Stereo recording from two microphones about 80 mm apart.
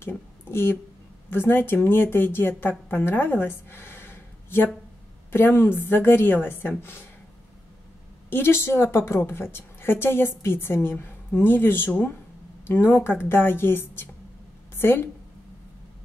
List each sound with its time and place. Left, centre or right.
0.0 s a sound: left
1.3 s a woman's voice: left
8.3 s a woman's voice: left